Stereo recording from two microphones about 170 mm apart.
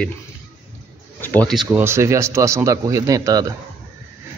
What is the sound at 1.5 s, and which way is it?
A man's voice, 10° right (ahead or behind).